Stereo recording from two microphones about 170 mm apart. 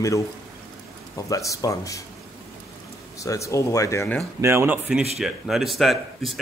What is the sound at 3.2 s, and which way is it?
Speech, 20° left (ahead or behind).